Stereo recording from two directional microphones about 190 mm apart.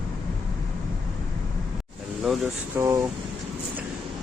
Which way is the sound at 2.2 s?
Centre (ahead or behind).